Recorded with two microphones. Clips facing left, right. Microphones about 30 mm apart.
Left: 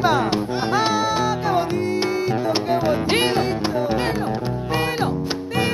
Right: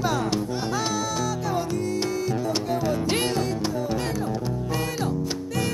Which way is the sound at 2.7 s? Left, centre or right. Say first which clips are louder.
Left 6 dB; left.